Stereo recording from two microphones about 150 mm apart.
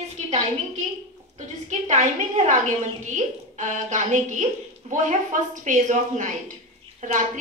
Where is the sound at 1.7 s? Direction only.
50° right (ahead or behind).